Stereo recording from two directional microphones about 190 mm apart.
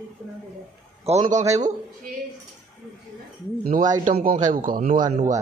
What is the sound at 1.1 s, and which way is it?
Speech, 35° right (ahead or behind).